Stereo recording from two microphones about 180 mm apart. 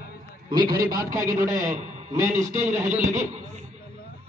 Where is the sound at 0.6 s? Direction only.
55° right (ahead or behind).